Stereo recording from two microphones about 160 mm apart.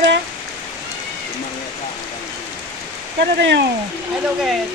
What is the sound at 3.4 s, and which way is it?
Speech, 90° right.